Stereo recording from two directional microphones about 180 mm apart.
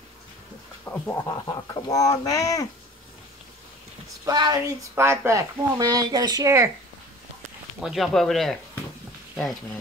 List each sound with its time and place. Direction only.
0.8 s speech: 10° left (ahead or behind)
4.3 s speech: 20° right (ahead or behind)
7.8 s speech: centre (ahead or behind)